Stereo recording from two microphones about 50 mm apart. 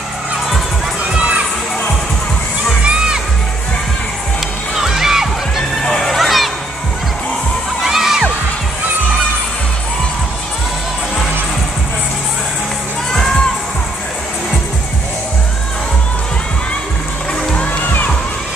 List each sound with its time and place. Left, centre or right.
1.1 s crowd: right
2.8 s crowd: centre
4.7 s crowd: centre
5.8 s music: centre
6.1 s children playing: centre
7.8 s children shouting: centre
13.1 s music: centre
17.5 s music: left